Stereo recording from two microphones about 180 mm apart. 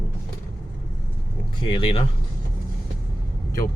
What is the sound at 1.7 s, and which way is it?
Speech, 35° left (ahead or behind).